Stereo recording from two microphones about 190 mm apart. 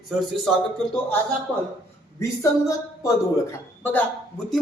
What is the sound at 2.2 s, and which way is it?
Speech, 15° left (ahead or behind).